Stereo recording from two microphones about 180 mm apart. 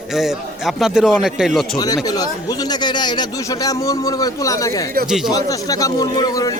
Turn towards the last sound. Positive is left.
turn(degrees=20)  # may be behind; listen again after turning